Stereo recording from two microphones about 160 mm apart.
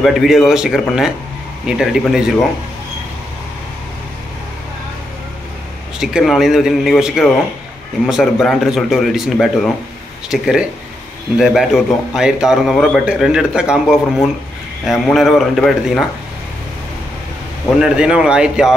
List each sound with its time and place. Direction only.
0.0 s a man's voice: centre (ahead or behind)
5.9 s a man's voice: centre (ahead or behind)
17.6 s a man's voice: 5° right (ahead or behind)